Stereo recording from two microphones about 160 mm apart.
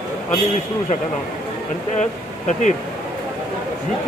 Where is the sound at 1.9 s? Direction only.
50° left (ahead or behind).